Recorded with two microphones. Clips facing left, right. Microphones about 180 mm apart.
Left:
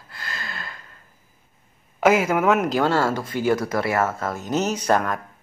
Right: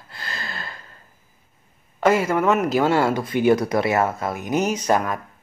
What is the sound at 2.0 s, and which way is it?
Speech, 5° left (ahead or behind).